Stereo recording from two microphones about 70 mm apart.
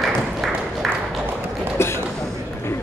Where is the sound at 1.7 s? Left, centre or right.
Left.